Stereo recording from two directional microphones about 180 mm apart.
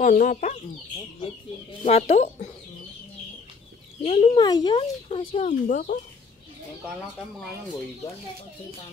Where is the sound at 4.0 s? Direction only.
35° left (ahead or behind).